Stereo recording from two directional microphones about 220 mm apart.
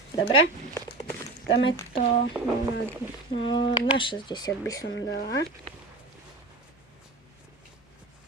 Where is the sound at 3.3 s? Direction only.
25° left (ahead or behind).